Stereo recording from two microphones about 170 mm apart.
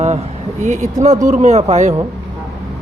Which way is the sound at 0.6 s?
45° right (ahead or behind).